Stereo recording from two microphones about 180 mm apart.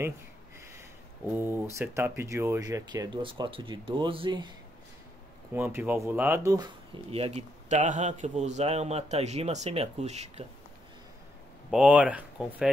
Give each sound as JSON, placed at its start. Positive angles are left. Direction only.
{"t": 1.3, "sound": "speech", "side_deg": -15}
{"t": 5.5, "sound": "speech", "side_deg": -10}
{"t": 7.1, "sound": "a man's voice", "side_deg": -35}
{"t": 11.7, "sound": "speech", "side_deg": -5}